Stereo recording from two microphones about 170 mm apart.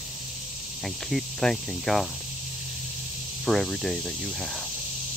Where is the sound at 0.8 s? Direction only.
Centre (ahead or behind).